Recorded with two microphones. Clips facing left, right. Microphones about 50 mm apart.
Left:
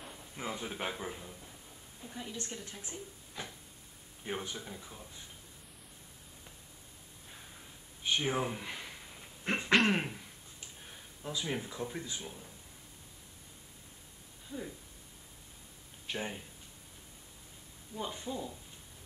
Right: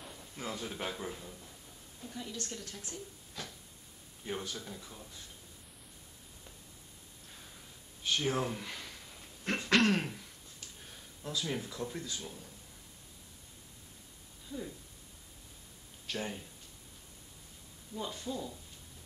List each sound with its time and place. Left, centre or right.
0.0 s speech: centre
8.0 s a sound: centre
16.1 s speech: centre
17.9 s speech: centre